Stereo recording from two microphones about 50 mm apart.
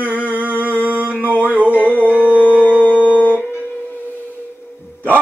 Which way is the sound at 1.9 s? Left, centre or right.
Left.